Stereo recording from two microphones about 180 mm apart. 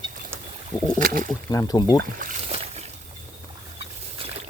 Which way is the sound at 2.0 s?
50° right (ahead or behind).